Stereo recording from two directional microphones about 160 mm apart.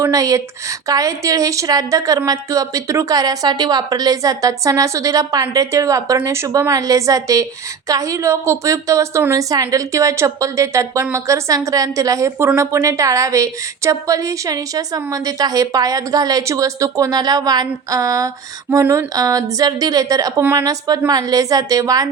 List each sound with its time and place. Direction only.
0.0 s a woman's voice: 20° right (ahead or behind)